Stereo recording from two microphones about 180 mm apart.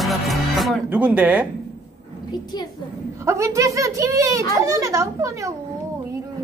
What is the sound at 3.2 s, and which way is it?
A woman's voice, 15° right (ahead or behind).